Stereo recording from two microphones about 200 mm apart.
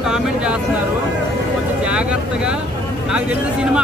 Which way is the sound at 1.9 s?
5° right (ahead or behind).